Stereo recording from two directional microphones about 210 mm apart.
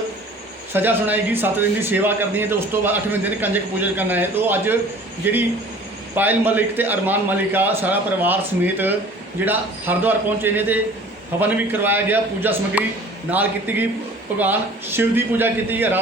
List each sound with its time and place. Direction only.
0.7 s speech: 10° right (ahead or behind)
6.1 s speech: 10° right (ahead or behind)